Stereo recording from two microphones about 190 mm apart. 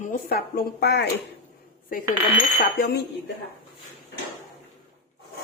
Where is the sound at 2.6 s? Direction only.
50° left (ahead or behind).